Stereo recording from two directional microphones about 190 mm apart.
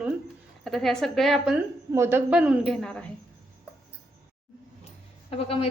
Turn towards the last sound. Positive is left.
turn(degrees=30)  # may be behind; listen again after turning